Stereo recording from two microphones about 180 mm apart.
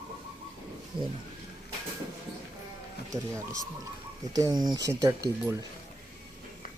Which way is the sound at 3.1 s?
15° right (ahead or behind).